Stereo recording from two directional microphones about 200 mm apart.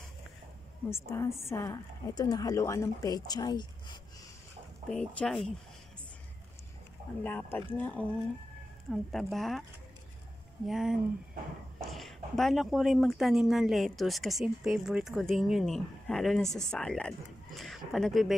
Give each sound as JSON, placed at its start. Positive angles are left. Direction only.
{"t": 0.8, "sound": "a woman's voice", "side_deg": 15}
{"t": 4.8, "sound": "speech", "side_deg": 5}
{"t": 7.2, "sound": "a woman's voice", "side_deg": 10}
{"t": 10.7, "sound": "speech", "side_deg": 0}